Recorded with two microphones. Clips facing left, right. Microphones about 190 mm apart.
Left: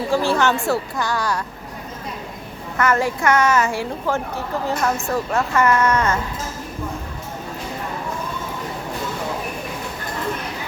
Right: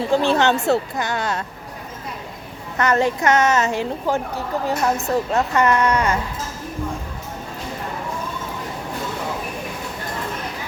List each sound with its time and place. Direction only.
0.1 s a woman's voice: 20° right (ahead or behind)
2.7 s a woman's voice: 20° right (ahead or behind)